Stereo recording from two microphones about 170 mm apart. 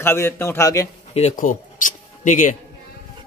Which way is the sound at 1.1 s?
40° left (ahead or behind).